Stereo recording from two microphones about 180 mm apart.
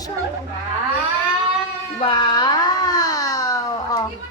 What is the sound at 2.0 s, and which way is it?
A child's voice, 25° left (ahead or behind).